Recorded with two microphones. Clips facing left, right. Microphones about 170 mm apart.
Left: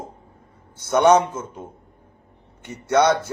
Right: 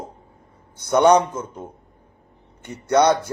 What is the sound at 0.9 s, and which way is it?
Speech, 15° right (ahead or behind).